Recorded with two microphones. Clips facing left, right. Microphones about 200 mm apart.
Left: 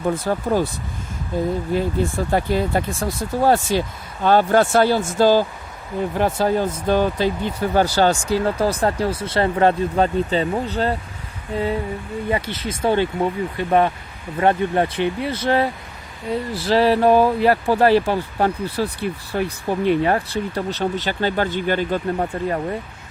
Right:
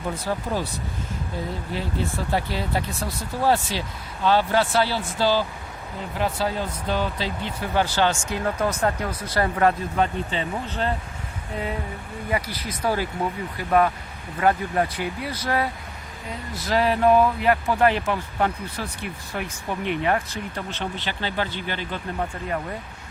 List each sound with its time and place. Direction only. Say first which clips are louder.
0.1 s speech: left 6 dB; 50° left (ahead or behind)
1.7 s speech: left 4 dB; 50° left (ahead or behind)
12.3 s speech: left 3 dB; 25° left (ahead or behind)